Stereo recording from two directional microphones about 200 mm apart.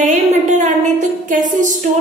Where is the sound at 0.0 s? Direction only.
40° right (ahead or behind).